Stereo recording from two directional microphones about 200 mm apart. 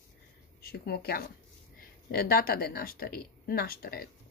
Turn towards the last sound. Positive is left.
turn(degrees=50)  # may be behind; listen again after turning